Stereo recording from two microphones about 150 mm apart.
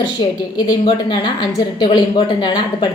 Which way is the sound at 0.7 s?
30° left (ahead or behind).